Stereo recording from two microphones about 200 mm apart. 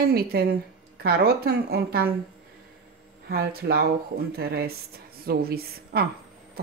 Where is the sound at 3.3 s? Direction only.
50° right (ahead or behind).